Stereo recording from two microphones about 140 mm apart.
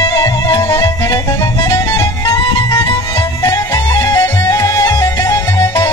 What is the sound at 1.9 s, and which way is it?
Music, 20° left (ahead or behind).